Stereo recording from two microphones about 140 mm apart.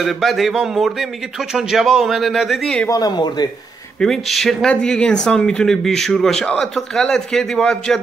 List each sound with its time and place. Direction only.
0.0 s speech: centre (ahead or behind)
2.9 s speech: 30° left (ahead or behind)
4.0 s speech: centre (ahead or behind)